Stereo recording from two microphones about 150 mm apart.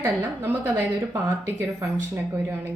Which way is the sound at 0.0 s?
15° right (ahead or behind).